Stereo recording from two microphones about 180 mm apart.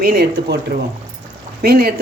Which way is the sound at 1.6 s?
60° right (ahead or behind).